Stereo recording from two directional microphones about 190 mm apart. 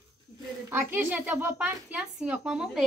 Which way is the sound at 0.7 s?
10° right (ahead or behind).